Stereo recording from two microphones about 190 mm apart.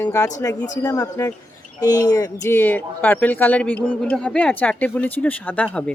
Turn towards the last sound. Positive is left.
turn(degrees=5)  # may be behind; listen again after turning